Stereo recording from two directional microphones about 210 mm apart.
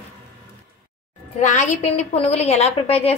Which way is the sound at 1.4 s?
35° left (ahead or behind).